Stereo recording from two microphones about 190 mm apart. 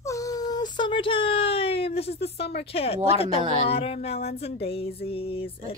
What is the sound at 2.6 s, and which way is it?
Speech, 30° left (ahead or behind).